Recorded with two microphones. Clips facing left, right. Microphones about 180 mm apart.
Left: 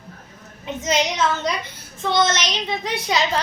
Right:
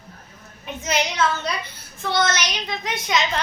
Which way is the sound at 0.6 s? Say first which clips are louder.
Left 3 dB; 20° left (ahead or behind).